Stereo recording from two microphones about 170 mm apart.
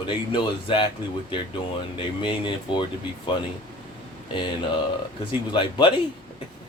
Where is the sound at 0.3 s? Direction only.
30° left (ahead or behind).